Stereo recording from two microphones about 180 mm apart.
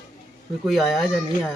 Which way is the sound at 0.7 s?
Centre (ahead or behind).